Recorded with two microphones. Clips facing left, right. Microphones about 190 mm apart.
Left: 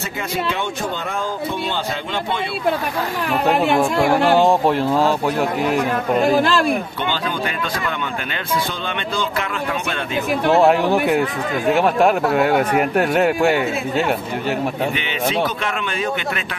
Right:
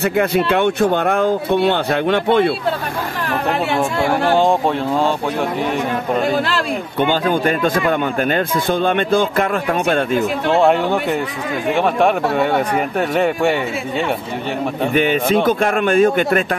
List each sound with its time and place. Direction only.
0.0 s speech: 60° right (ahead or behind)
3.3 s speech: 15° left (ahead or behind)
7.0 s speech: 50° right (ahead or behind)
10.6 s speech: 5° left (ahead or behind)
15.0 s speech: 50° right (ahead or behind)